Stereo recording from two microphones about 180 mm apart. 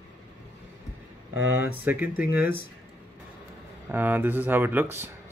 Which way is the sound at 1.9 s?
10° right (ahead or behind).